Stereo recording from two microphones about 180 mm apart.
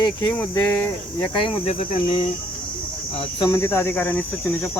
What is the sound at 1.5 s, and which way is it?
Speech, 35° left (ahead or behind).